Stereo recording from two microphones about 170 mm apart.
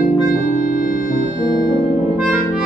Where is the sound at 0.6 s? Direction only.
55° left (ahead or behind).